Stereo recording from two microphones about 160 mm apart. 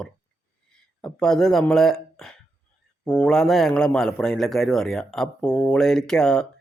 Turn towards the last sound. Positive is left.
turn(degrees=5)  # may be behind; listen again after turning